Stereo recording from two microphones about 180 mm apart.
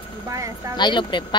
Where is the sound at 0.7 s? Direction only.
25° left (ahead or behind).